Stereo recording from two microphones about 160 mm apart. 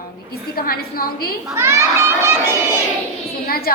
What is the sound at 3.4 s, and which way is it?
Speech, 70° left (ahead or behind).